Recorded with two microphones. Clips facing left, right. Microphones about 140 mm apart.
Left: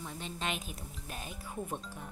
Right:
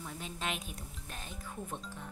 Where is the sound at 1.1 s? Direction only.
10° left (ahead or behind).